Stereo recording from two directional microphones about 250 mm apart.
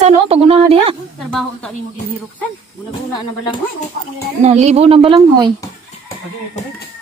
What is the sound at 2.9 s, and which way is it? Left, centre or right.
Speech, centre.